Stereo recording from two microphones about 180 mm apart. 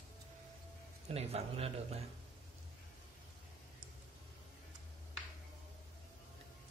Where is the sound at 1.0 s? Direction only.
35° right (ahead or behind).